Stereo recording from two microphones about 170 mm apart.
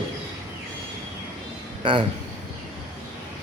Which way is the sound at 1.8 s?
30° right (ahead or behind).